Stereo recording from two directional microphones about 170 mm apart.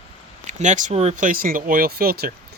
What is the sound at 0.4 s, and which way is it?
Speech, 45° right (ahead or behind).